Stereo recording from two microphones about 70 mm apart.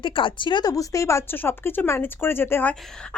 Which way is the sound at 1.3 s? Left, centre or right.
Left.